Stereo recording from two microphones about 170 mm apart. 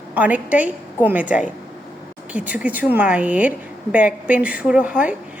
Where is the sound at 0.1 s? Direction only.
10° right (ahead or behind).